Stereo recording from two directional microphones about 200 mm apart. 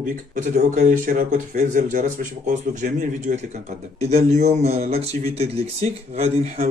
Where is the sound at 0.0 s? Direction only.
40° right (ahead or behind).